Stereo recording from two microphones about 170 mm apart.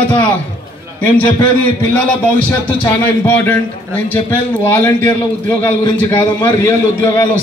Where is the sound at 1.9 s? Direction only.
10° left (ahead or behind).